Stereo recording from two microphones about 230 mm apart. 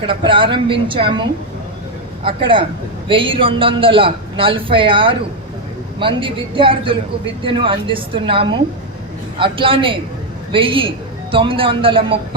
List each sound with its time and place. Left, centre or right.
0.1 s a man's voice: right